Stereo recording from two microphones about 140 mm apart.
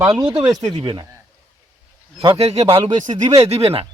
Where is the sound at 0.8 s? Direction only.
35° right (ahead or behind).